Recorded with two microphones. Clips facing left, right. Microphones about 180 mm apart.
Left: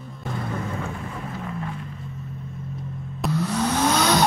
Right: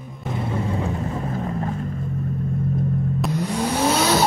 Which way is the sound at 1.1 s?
40° right (ahead or behind).